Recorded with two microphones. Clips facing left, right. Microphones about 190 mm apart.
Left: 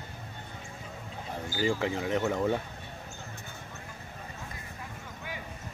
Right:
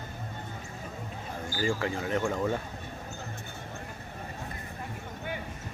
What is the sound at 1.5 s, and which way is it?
Speech, 20° left (ahead or behind).